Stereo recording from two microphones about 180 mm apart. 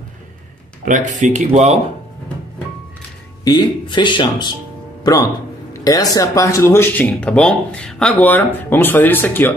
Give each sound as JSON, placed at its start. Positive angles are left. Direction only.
{"t": 0.8, "sound": "speech", "side_deg": -45}
{"t": 3.4, "sound": "speech", "side_deg": 25}